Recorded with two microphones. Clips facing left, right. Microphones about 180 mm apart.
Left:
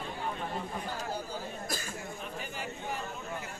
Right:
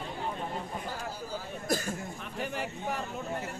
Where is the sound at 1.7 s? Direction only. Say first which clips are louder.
Right 7 dB; 60° right (ahead or behind).